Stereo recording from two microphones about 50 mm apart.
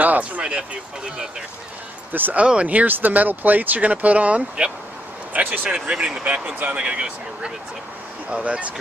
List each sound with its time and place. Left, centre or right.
0.0 s speech: right; by 1.3 s centre
2.3 s speech: right
5.3 s speech: right
5.9 s speech: centre
6.9 s speech: centre